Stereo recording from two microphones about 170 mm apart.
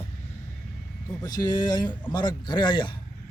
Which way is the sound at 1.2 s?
20° left (ahead or behind).